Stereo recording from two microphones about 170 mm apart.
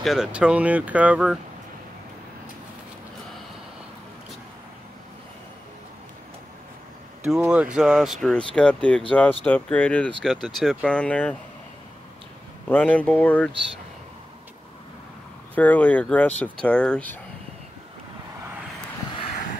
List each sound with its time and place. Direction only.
0.0 s speech: centre (ahead or behind)
7.2 s speech: 5° right (ahead or behind)
12.6 s speech: 10° left (ahead or behind)
15.5 s speech: 10° left (ahead or behind)